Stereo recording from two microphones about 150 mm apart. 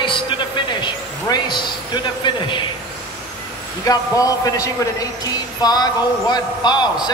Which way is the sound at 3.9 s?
25° left (ahead or behind).